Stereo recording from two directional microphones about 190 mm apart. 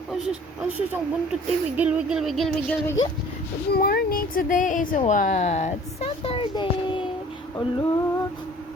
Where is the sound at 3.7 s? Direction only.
55° left (ahead or behind); by 7.0 s 25° left (ahead or behind).